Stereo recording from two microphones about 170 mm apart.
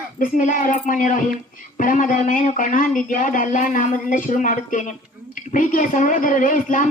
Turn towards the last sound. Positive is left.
turn(degrees=50)  # may be behind; listen again after turning